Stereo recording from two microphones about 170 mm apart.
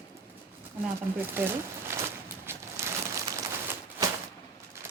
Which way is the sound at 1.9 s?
15° right (ahead or behind).